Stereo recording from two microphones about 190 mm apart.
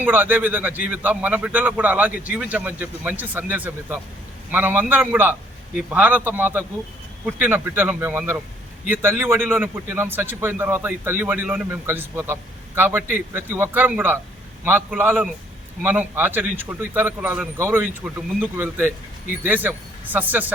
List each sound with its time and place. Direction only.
0.0 s a man's voice: 10° right (ahead or behind)